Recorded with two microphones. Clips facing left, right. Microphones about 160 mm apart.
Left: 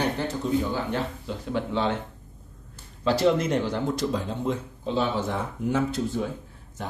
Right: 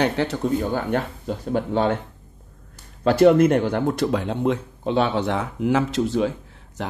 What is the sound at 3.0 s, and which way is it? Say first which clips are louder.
Speech: right 8 dB; 55° right (ahead or behind).